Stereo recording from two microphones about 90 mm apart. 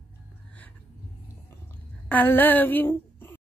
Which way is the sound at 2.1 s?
20° left (ahead or behind).